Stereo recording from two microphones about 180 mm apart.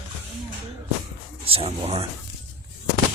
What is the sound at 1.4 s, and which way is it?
Speech, 30° right (ahead or behind).